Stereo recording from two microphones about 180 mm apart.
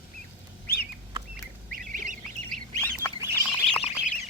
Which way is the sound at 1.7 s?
50° right (ahead or behind).